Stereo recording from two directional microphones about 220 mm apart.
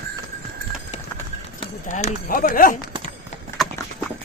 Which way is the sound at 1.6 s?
30° left (ahead or behind).